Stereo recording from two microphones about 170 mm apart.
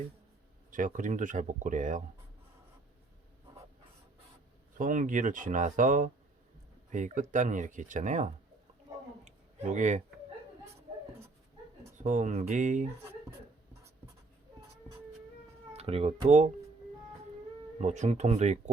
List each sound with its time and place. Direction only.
0.7 s speech: 50° right (ahead or behind)
4.8 s speech: 50° right (ahead or behind)
9.2 s a sound: 45° right (ahead or behind)
11.8 s speech: 45° right (ahead or behind)
15.7 s speech: 35° right (ahead or behind)
17.7 s speech: 45° right (ahead or behind)